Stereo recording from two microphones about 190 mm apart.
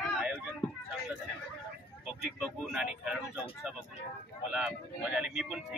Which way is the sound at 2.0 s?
Centre (ahead or behind).